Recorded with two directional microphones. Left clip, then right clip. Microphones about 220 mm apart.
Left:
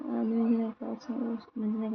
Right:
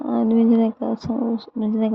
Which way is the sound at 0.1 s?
35° right (ahead or behind).